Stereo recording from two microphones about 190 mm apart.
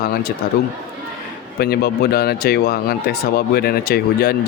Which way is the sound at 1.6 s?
55° left (ahead or behind).